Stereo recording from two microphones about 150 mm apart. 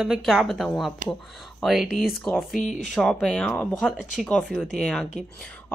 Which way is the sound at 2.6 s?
55° left (ahead or behind).